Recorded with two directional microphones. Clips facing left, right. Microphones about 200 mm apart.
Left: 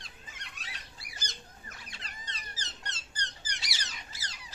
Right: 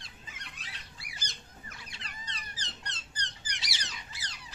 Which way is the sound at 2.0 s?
45° left (ahead or behind).